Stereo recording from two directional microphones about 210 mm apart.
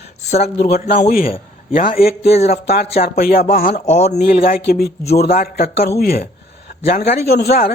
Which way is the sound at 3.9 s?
30° left (ahead or behind).